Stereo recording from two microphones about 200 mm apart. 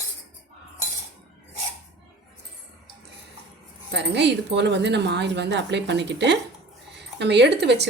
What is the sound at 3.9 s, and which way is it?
Speech, 60° right (ahead or behind).